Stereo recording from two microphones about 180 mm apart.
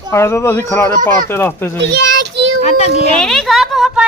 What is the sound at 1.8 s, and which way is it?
Child singing, 75° right (ahead or behind).